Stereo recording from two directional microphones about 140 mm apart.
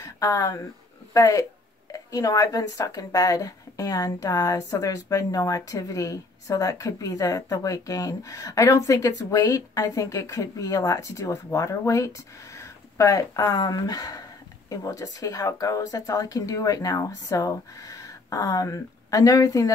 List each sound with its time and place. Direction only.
0.0 s a woman's voice: 25° left (ahead or behind)